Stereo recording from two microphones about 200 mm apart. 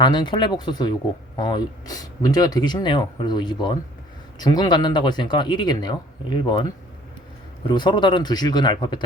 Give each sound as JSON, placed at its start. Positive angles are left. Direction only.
{"t": 0.0, "sound": "speech", "side_deg": 20}